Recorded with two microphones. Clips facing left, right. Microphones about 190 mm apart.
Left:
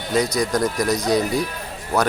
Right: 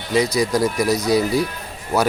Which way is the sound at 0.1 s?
Centre (ahead or behind).